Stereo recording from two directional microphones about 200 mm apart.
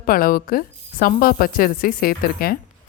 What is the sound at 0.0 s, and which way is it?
Speech, 45° left (ahead or behind).